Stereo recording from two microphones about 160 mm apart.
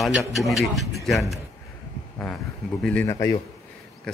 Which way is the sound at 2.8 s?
10° left (ahead or behind).